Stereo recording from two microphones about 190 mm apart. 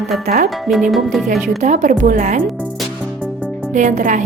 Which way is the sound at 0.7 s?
Centre (ahead or behind).